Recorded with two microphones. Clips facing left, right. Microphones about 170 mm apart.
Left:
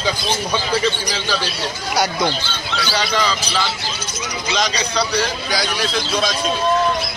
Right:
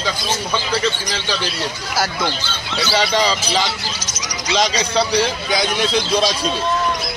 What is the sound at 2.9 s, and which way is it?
Speech, 30° right (ahead or behind).